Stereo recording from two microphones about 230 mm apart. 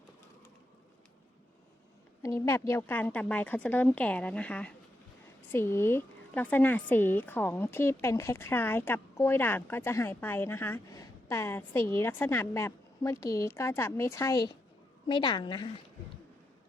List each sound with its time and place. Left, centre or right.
2.2 s a woman's voice: centre